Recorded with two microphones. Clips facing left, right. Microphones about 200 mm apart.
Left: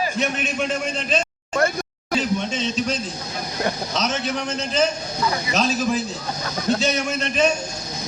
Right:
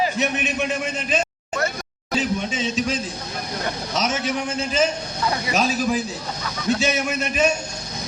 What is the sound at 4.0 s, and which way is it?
A man's voice, 10° right (ahead or behind).